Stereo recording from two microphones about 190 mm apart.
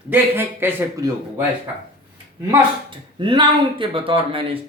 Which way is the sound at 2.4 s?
25° right (ahead or behind).